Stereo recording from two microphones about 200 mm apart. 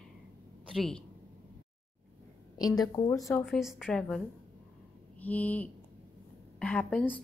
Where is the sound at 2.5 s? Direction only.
20° left (ahead or behind).